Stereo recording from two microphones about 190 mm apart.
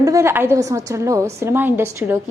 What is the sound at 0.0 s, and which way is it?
A woman's voice, 15° right (ahead or behind).